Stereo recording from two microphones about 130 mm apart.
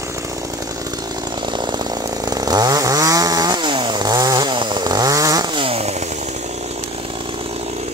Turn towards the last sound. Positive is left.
turn(degrees=-55)  # may be behind; listen again after turning